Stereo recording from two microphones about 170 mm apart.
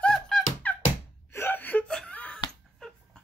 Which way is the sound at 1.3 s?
10° left (ahead or behind).